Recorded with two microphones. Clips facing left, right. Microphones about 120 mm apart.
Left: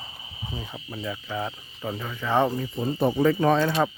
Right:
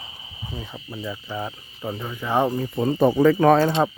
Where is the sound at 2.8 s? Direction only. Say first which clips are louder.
Right 5 dB; 80° right.